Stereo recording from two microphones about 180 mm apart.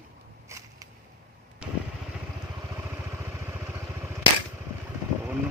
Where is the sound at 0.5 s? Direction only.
15° right (ahead or behind).